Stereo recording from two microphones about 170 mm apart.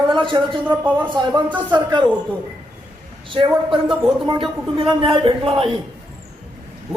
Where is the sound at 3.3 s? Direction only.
30° right (ahead or behind).